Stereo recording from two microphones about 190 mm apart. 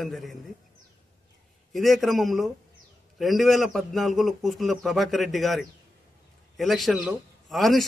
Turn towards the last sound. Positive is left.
turn(degrees=0)  # may be behind; listen again after turning